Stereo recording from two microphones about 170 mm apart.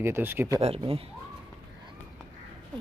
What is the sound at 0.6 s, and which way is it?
Speech, 35° right (ahead or behind).